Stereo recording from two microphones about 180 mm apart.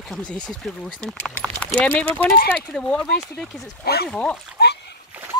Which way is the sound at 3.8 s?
60° left (ahead or behind).